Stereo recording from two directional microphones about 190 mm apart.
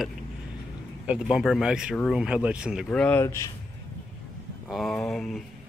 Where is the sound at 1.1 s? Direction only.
5° right (ahead or behind); by 3.5 s 15° left (ahead or behind).